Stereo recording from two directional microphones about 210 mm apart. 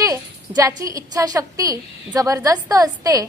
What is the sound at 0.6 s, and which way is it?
A woman's voice, 15° right (ahead or behind).